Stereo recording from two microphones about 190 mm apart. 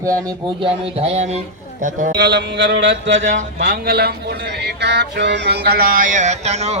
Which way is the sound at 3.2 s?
45° right (ahead or behind).